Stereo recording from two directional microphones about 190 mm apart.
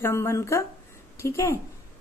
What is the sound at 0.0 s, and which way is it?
A woman's voice, 15° left (ahead or behind).